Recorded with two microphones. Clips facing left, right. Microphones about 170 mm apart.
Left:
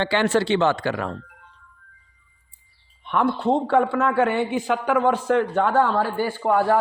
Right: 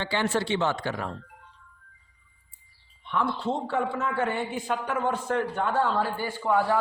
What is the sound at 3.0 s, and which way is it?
A man's voice, 65° left (ahead or behind).